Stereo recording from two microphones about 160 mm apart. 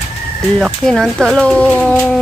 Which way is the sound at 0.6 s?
5° left (ahead or behind).